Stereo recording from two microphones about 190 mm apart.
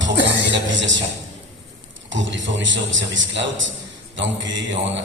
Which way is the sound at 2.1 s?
75° right (ahead or behind).